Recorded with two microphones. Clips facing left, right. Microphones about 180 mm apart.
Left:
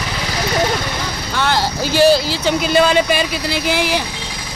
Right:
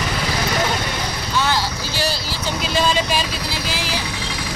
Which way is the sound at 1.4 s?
60° left (ahead or behind).